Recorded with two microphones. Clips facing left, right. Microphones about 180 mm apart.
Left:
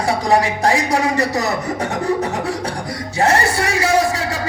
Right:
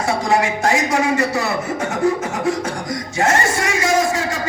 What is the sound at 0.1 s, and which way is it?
Speech, 35° left (ahead or behind).